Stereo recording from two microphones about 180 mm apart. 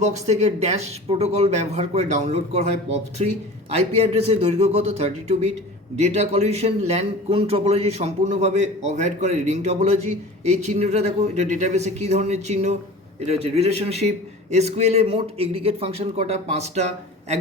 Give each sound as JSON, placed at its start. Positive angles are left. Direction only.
{"t": 0.0, "sound": "a man's voice", "side_deg": -40}